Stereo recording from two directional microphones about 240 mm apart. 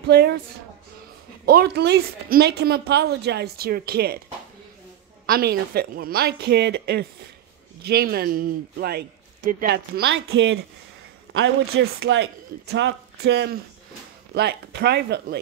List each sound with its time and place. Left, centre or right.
0.0 s a woman's voice: right
1.4 s a woman's voice: right
5.2 s a woman's voice: right
11.8 s speech: right